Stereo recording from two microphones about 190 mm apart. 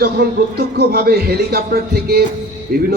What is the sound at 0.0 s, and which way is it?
A man's voice, 55° right (ahead or behind).